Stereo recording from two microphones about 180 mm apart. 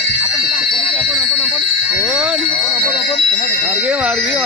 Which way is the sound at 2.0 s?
5° right (ahead or behind).